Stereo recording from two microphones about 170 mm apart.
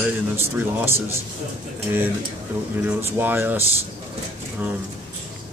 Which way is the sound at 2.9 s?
10° right (ahead or behind).